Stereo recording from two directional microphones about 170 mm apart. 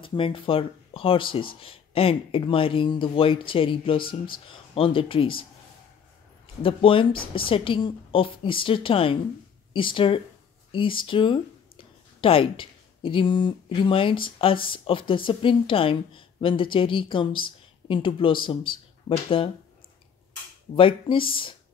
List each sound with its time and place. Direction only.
0.0 s speech: 30° left (ahead or behind)
20.7 s speech: 30° left (ahead or behind)